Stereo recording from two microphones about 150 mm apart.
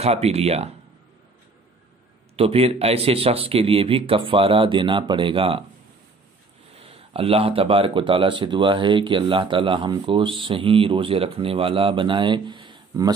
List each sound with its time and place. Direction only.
0.0 s speech: 45° right (ahead or behind)
2.3 s speech: 40° right (ahead or behind)
6.8 s speech: 40° right (ahead or behind)